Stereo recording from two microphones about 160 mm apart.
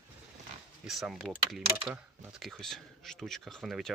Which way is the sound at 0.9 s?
Centre (ahead or behind).